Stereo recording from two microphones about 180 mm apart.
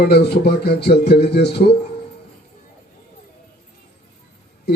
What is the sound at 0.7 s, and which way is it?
Speech, 65° left (ahead or behind).